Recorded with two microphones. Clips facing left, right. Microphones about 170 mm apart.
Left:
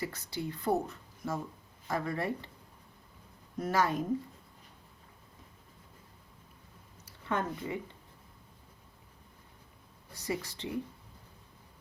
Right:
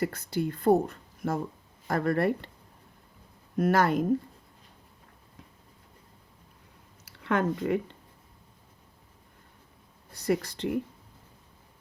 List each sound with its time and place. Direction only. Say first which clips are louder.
0.0 s speech: right 8 dB; 50° right (ahead or behind)
3.6 s speech: right 6 dB; 65° right (ahead or behind)
7.0 s speech: right 7 dB; 90° right
10.2 s speech: right 9 dB; 65° right (ahead or behind)